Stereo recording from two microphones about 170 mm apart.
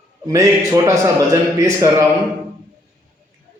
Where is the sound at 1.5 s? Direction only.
20° right (ahead or behind).